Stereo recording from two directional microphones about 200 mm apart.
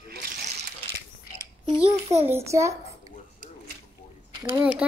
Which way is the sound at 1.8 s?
30° right (ahead or behind).